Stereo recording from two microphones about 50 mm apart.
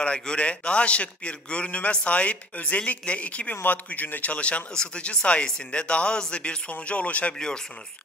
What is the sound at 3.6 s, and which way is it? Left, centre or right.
Speech, left.